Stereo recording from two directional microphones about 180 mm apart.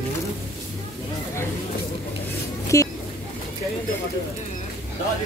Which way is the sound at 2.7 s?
20° left (ahead or behind).